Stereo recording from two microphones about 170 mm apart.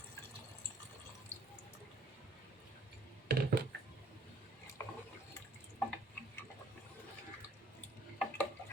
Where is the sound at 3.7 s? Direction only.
90° right.